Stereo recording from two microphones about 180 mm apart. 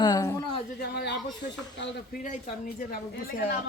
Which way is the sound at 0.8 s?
65° left (ahead or behind).